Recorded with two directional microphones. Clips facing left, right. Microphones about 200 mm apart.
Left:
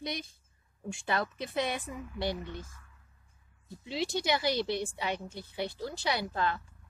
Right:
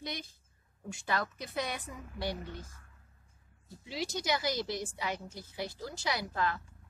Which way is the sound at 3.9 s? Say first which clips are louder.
Left 3 dB; 25° left (ahead or behind).